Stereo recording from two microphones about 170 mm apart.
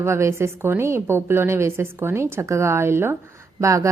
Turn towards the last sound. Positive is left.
turn(degrees=-20)  # may be behind; listen again after turning